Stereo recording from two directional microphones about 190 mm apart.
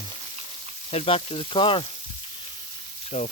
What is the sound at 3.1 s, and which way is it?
Speech, 35° left (ahead or behind).